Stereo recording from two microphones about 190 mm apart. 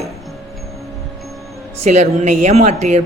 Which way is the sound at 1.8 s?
35° right (ahead or behind).